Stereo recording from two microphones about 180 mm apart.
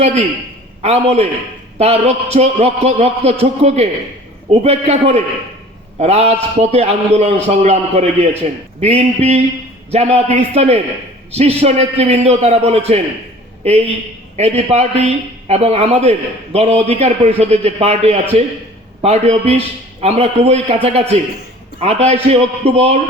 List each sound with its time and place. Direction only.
0.8 s a man's voice: 35° right (ahead or behind)